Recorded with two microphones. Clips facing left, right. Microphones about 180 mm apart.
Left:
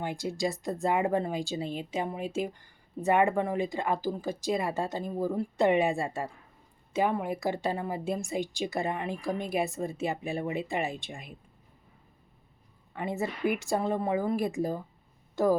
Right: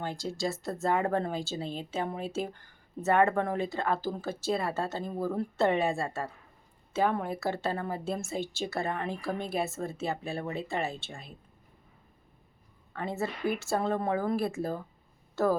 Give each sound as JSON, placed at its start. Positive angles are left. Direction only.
{"t": 0.0, "sound": "speech", "side_deg": 15}
{"t": 12.9, "sound": "speech", "side_deg": 15}